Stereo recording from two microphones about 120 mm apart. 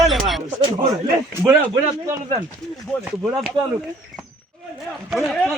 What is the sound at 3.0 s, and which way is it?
Speech, 10° right (ahead or behind).